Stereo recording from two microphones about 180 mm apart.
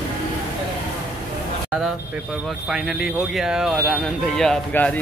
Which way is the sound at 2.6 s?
Centre (ahead or behind).